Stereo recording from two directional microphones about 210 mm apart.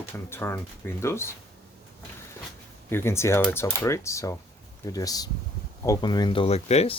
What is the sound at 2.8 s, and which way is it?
Speech, 10° left (ahead or behind).